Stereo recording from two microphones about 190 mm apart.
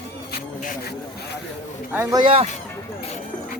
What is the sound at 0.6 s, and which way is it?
Speech, 45° left (ahead or behind).